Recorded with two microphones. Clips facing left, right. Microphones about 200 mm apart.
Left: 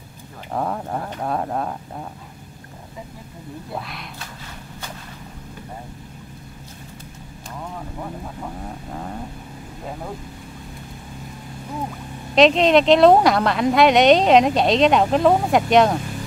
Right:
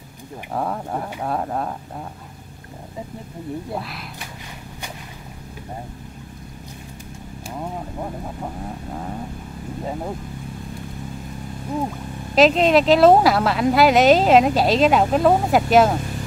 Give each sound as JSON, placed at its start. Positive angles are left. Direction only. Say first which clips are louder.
{"t": 0.5, "sound": "speech", "louder": "even", "side_deg": 0}
{"t": 8.9, "sound": "speech", "louder": "even", "side_deg": 0}
{"t": 12.4, "sound": "speech", "louder": "left 1 dB", "side_deg": -5}